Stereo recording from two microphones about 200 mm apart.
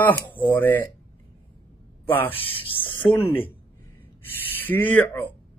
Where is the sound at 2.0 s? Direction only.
10° left (ahead or behind).